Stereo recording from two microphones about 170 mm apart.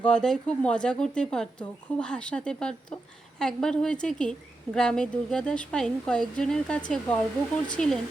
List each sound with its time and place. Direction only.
0.0 s speech: 5° left (ahead or behind)